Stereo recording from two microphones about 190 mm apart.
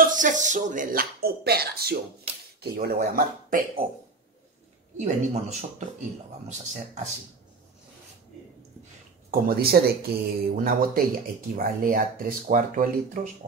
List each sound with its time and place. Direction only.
0.0 s speech: 45° right (ahead or behind)
4.9 s speech: 35° right (ahead or behind)
9.3 s speech: 55° right (ahead or behind)